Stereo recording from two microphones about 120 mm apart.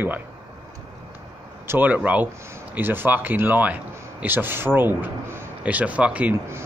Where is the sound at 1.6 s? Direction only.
15° right (ahead or behind).